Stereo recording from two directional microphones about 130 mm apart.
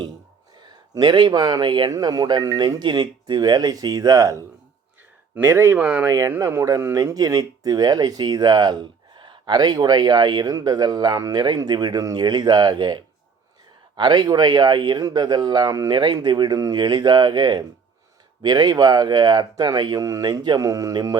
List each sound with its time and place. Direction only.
0.6 s speech: 35° right (ahead or behind)